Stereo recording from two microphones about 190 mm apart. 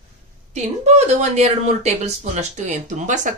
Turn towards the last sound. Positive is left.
turn(degrees=-40)  # may be behind; listen again after turning